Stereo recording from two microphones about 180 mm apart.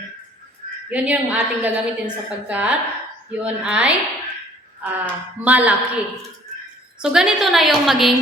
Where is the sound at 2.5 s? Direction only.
5° right (ahead or behind).